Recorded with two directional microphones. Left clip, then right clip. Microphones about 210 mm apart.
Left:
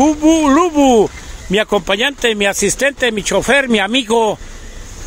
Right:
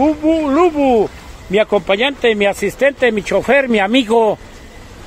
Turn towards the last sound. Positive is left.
turn(degrees=10)  # may be behind; listen again after turning